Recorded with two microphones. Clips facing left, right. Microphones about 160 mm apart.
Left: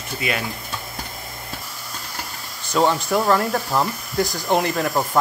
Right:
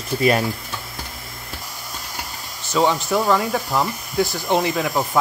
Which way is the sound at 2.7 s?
Centre (ahead or behind).